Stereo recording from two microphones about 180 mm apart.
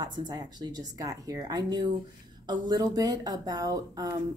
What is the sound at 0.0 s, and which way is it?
A woman's voice, 20° right (ahead or behind).